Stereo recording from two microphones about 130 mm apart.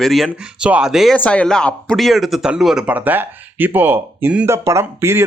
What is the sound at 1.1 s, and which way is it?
Speech, 10° left (ahead or behind).